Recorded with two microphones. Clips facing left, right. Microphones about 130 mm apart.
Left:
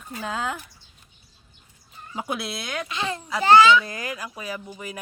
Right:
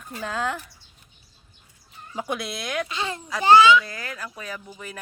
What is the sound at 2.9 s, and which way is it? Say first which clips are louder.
Speech: left 1 dB; 30° right (ahead or behind).